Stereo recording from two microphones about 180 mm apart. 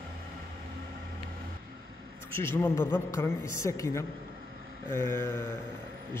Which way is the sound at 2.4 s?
15° left (ahead or behind).